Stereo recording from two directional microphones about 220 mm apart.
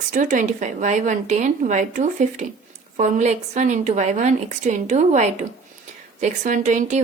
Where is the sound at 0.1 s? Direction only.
35° right (ahead or behind).